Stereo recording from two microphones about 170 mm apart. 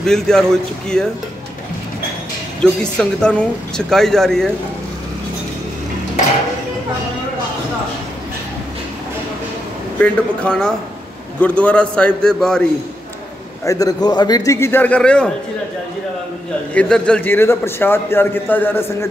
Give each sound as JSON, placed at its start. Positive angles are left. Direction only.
{"t": 0.0, "sound": "a woman's voice", "side_deg": 5}
{"t": 2.6, "sound": "a woman's voice", "side_deg": 5}
{"t": 9.9, "sound": "a man's voice", "side_deg": 5}
{"t": 13.7, "sound": "a man's voice", "side_deg": 20}
{"t": 16.7, "sound": "a man's voice", "side_deg": 5}